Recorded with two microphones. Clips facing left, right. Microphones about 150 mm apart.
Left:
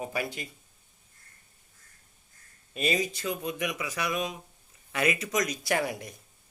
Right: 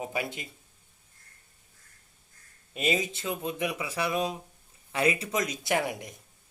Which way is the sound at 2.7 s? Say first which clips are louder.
Even; 20° right (ahead or behind).